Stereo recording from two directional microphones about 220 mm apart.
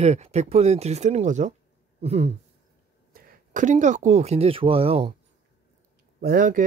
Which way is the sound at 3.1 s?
40° right (ahead or behind).